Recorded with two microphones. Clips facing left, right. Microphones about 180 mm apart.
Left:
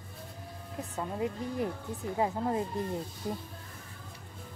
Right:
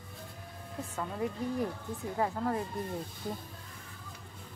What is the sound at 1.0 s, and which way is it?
Speech, 20° left (ahead or behind).